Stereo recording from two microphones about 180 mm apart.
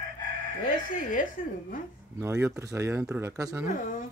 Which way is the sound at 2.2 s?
15° right (ahead or behind).